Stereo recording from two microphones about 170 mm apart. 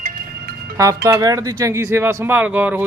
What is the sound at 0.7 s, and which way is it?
Speech, 20° right (ahead or behind).